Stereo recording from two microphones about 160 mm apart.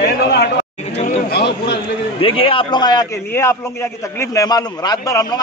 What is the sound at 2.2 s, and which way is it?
A man's voice, 35° left (ahead or behind).